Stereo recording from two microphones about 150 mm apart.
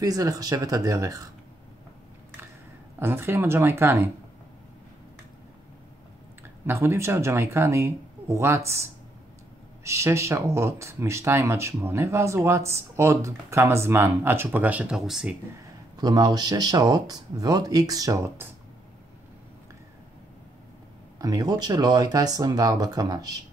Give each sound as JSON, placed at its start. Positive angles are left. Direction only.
{"t": 0.0, "sound": "speech", "side_deg": -25}
{"t": 3.0, "sound": "speech", "side_deg": -15}
{"t": 6.4, "sound": "speech", "side_deg": -15}
{"t": 9.8, "sound": "speech", "side_deg": -20}
{"t": 16.0, "sound": "speech", "side_deg": -25}
{"t": 21.2, "sound": "speech", "side_deg": -25}